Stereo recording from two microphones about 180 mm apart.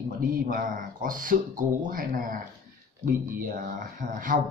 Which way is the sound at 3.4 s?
50° right (ahead or behind).